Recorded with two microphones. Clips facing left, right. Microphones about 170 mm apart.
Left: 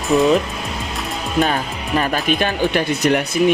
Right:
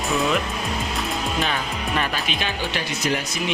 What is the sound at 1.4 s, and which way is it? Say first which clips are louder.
Speech: left 4 dB; 45° left (ahead or behind).